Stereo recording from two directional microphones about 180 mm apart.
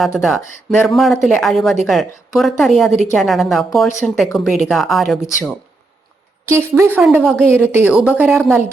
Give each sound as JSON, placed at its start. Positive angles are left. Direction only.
{"t": 0.0, "sound": "speech", "side_deg": 0}
{"t": 6.5, "sound": "a woman's voice", "side_deg": -15}